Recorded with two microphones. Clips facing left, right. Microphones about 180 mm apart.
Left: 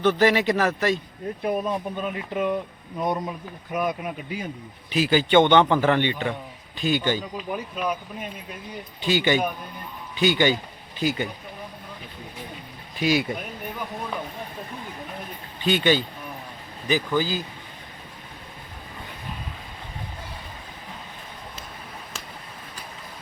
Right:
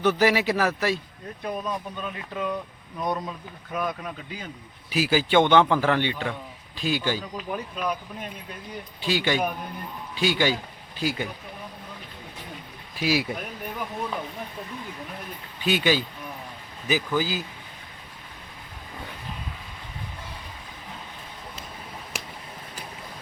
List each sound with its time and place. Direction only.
0.0 s speech: 5° right (ahead or behind)
1.4 s a man's voice: 25° left (ahead or behind)
4.9 s speech: 5° right (ahead or behind)
13.0 s speech: centre (ahead or behind)
15.6 s speech: 5° right (ahead or behind)